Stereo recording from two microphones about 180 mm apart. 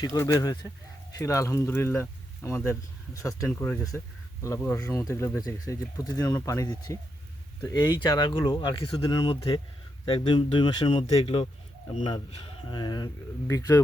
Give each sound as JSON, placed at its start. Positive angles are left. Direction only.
{"t": 0.0, "sound": "speech", "side_deg": 15}